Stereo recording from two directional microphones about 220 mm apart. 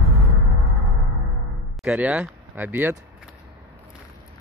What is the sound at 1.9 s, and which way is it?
Speech, 5° right (ahead or behind).